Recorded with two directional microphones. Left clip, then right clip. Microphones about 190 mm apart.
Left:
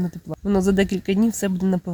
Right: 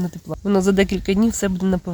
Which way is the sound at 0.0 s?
Centre (ahead or behind).